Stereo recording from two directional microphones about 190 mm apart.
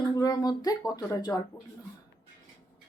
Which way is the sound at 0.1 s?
20° left (ahead or behind).